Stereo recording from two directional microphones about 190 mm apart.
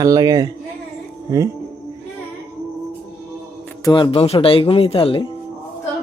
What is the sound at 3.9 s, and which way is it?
Speech, 25° left (ahead or behind).